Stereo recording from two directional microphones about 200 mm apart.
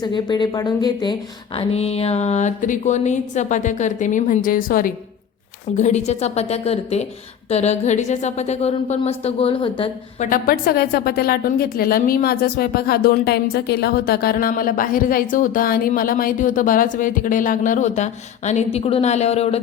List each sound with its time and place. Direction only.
0.0 s speech: 20° left (ahead or behind)
1.5 s speech: 30° left (ahead or behind)
10.2 s a woman's voice: 45° left (ahead or behind)